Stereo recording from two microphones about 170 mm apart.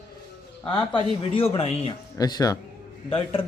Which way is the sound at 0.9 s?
35° left (ahead or behind).